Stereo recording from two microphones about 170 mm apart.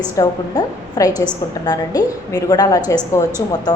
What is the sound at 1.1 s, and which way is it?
Speech, 15° right (ahead or behind).